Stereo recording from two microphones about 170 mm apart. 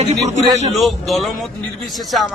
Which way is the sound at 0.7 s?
Centre (ahead or behind).